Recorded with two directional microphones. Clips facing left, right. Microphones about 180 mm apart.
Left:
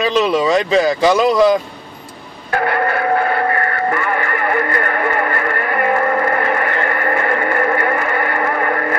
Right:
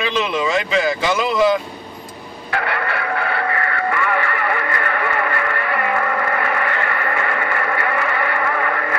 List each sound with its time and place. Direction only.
0.0 s speech: 35° left (ahead or behind)
2.5 s radio: 40° left (ahead or behind)